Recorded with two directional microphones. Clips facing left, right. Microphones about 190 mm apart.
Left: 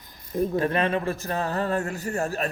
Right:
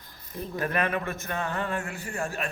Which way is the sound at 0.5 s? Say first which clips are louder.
Left 1 dB; 25° left (ahead or behind).